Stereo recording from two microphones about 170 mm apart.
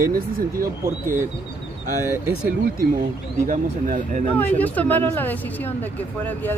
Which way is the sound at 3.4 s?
50° right (ahead or behind).